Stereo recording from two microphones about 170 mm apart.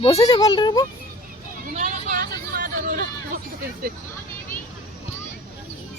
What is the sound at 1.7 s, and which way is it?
Hubbub, 45° right (ahead or behind).